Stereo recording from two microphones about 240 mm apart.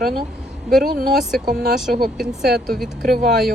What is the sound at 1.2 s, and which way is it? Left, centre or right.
Speech, centre.